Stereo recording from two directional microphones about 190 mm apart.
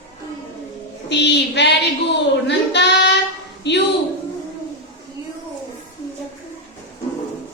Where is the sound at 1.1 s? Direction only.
65° left (ahead or behind).